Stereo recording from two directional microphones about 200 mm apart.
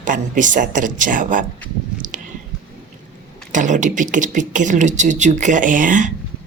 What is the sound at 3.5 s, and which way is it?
Speech, 40° right (ahead or behind).